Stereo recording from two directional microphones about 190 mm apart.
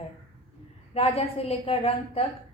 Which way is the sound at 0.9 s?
30° left (ahead or behind).